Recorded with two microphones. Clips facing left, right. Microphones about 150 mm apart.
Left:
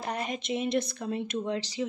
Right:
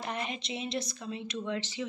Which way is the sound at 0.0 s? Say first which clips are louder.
Left 3 dB; 40° left (ahead or behind).